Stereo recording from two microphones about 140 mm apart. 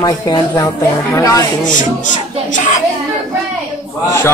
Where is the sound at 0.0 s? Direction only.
30° left (ahead or behind).